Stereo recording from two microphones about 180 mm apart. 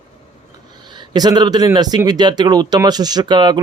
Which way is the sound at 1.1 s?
25° right (ahead or behind).